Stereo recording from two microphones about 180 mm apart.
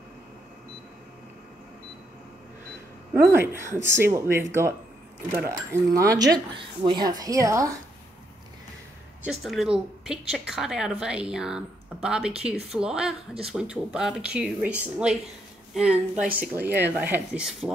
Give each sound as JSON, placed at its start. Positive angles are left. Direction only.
{"t": 3.1, "sound": "speech", "side_deg": -15}
{"t": 5.7, "sound": "a woman's voice", "side_deg": -20}
{"t": 9.2, "sound": "speech", "side_deg": 0}